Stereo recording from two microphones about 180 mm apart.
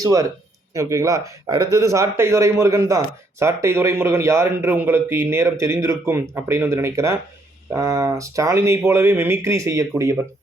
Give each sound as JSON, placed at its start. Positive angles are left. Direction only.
{"t": 0.0, "sound": "speech", "side_deg": -20}